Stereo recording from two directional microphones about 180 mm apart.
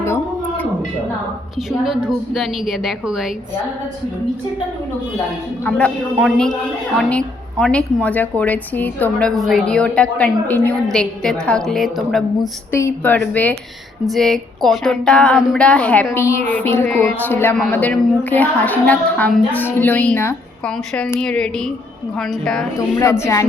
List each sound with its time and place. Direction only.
0.0 s a sound: 10° left (ahead or behind)
1.8 s a woman's voice: 5° right (ahead or behind)
5.6 s a woman's voice: 5° left (ahead or behind)
12.7 s a woman's voice: 10° left (ahead or behind)
23.0 s a woman's voice: 15° left (ahead or behind)